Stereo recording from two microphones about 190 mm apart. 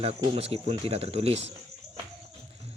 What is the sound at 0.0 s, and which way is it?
Speech, 30° right (ahead or behind).